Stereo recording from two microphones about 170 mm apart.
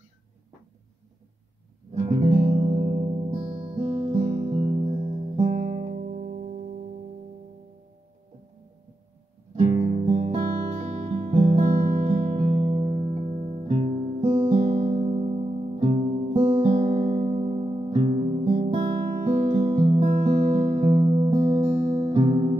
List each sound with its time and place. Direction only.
2.0 s music: 30° right (ahead or behind)
2.9 s music: 40° right (ahead or behind)
9.6 s music: 40° right (ahead or behind)